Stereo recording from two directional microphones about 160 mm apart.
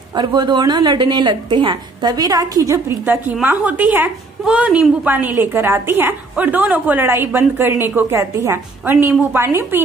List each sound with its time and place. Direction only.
0.1 s a woman's voice: 30° right (ahead or behind)